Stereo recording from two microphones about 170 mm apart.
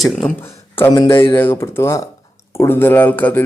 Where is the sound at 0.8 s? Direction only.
15° left (ahead or behind).